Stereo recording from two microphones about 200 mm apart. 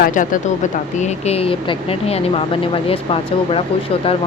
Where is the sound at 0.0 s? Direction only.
40° left (ahead or behind).